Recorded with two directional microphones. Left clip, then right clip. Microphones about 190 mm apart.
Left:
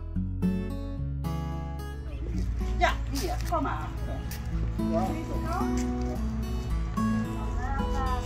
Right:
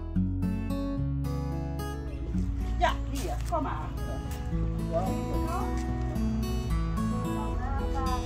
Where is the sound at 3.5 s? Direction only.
25° right (ahead or behind).